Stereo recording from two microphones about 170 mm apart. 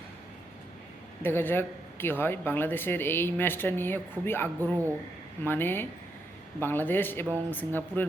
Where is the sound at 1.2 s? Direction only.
10° left (ahead or behind).